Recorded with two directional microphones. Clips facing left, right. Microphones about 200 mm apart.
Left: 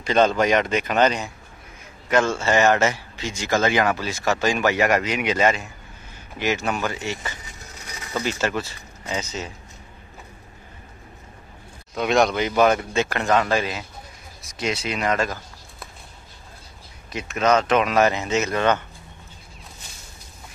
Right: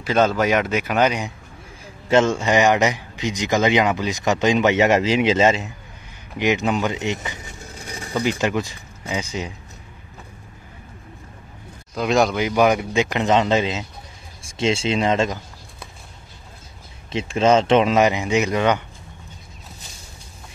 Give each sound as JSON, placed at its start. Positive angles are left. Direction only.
{"t": 0.0, "sound": "speech", "side_deg": -5}
{"t": 11.9, "sound": "speech", "side_deg": 0}
{"t": 17.1, "sound": "speech", "side_deg": -25}
{"t": 18.0, "sound": "speech", "side_deg": -15}